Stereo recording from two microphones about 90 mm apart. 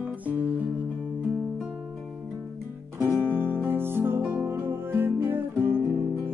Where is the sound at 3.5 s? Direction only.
25° right (ahead or behind).